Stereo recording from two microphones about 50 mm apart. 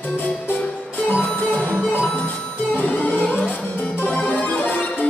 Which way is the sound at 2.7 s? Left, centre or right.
Left.